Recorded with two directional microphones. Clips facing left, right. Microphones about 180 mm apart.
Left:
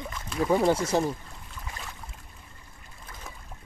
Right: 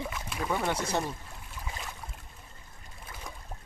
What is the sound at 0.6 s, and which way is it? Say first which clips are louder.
Speech: left 7 dB; 25° left (ahead or behind).